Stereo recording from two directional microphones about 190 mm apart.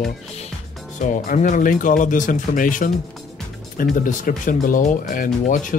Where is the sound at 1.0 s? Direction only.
40° left (ahead or behind).